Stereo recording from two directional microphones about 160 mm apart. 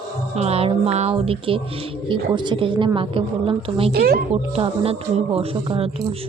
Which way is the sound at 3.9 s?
70° right (ahead or behind).